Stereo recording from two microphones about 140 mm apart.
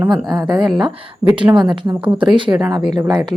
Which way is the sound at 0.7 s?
5° right (ahead or behind).